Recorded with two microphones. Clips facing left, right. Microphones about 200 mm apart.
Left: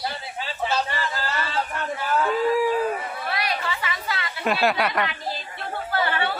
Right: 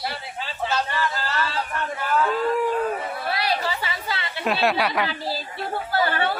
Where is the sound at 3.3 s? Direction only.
30° right (ahead or behind).